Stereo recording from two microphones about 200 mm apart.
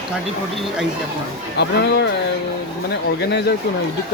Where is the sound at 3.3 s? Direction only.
55° left (ahead or behind).